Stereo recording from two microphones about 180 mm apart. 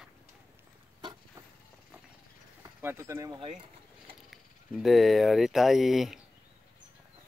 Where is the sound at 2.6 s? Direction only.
15° right (ahead or behind).